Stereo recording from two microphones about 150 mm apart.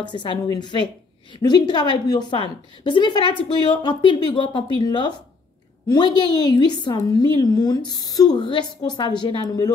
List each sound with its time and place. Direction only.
0.0 s a woman's voice: 30° left (ahead or behind)